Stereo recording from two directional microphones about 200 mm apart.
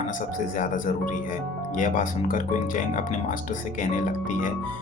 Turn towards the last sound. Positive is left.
turn(degrees=40)  # may be behind; listen again after turning